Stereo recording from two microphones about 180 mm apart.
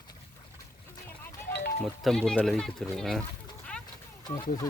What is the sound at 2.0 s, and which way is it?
Speech, centre (ahead or behind).